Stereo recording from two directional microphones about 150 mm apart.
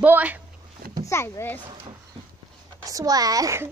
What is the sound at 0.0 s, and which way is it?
Speech, 10° right (ahead or behind).